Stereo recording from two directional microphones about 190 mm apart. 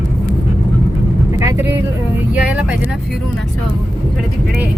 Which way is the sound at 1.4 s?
15° right (ahead or behind).